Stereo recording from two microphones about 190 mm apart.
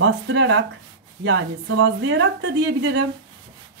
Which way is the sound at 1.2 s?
70° right (ahead or behind).